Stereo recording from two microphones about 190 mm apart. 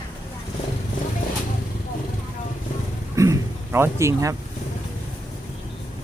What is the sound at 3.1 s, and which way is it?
Speech, 15° right (ahead or behind).